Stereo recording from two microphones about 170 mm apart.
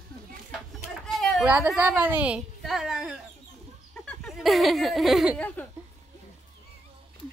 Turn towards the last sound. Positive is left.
turn(degrees=5)  # may be behind; listen again after turning